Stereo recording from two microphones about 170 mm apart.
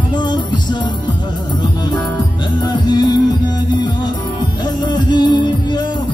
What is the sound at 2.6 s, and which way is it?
Music, 25° left (ahead or behind).